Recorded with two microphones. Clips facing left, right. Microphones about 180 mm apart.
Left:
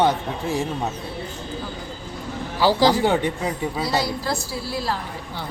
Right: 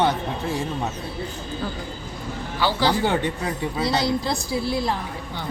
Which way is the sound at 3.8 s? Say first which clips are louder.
Right 3 dB; 20° right (ahead or behind).